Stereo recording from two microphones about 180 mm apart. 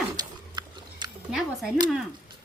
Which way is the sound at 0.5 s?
25° right (ahead or behind).